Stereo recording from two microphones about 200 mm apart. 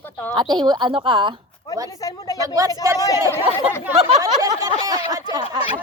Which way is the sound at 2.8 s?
15° right (ahead or behind).